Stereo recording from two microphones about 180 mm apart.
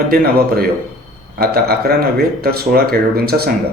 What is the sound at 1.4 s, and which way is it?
Speech, 60° right (ahead or behind).